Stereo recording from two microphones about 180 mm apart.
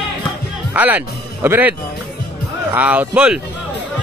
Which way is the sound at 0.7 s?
10° right (ahead or behind).